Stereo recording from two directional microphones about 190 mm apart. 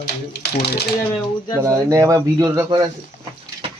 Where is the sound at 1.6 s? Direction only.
15° right (ahead or behind).